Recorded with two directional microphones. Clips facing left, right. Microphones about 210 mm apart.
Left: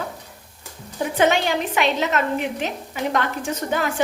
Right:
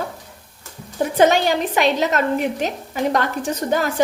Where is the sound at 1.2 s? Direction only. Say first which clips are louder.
Right 4 dB; 40° right (ahead or behind).